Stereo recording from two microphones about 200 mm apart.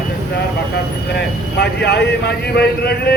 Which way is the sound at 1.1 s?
55° left (ahead or behind).